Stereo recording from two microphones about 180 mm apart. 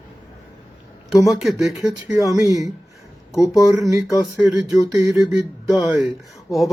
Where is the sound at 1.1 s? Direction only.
Centre (ahead or behind).